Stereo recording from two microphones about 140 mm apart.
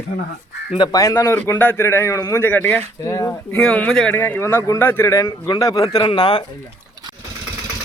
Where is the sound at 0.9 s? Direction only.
20° left (ahead or behind).